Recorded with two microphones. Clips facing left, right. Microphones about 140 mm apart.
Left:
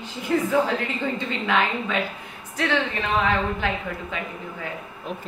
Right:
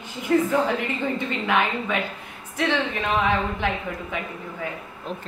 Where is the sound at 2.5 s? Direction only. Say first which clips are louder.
Even; 15° right (ahead or behind).